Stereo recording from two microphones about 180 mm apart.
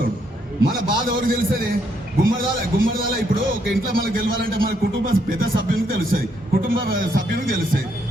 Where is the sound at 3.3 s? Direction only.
50° right (ahead or behind).